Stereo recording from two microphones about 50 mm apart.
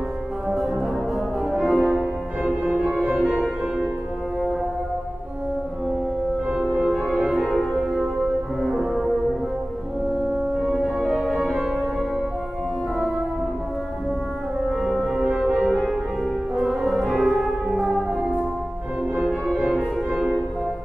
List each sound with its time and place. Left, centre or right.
0.5 s music: centre
2.8 s music: right
3.1 s music: centre
6.9 s music: centre
7.5 s music: centre
10.7 s music: centre
14.7 s music: centre
16.5 s music: centre